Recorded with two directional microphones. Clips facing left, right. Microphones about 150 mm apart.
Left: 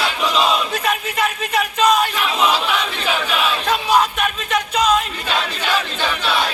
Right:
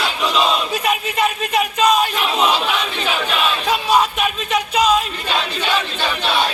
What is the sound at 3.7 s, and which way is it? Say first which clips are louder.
Music: even; 15° right (ahead or behind).